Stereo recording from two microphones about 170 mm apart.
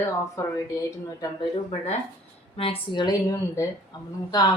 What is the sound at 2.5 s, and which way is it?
Speech, 30° left (ahead or behind).